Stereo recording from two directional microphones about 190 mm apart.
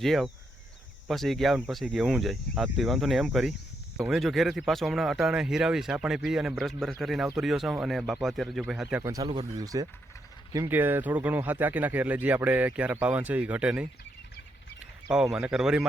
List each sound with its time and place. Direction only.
0.0 s speech: centre (ahead or behind)
9.0 s speech: 20° right (ahead or behind); by 13.8 s 5° right (ahead or behind)
15.1 s speech: 5° right (ahead or behind)